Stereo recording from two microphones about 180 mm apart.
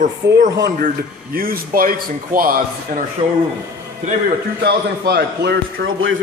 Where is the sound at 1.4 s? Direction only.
55° right (ahead or behind).